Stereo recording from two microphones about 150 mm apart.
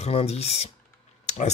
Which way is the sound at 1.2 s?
50° left (ahead or behind).